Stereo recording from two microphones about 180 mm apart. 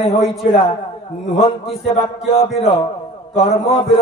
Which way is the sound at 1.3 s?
35° left (ahead or behind).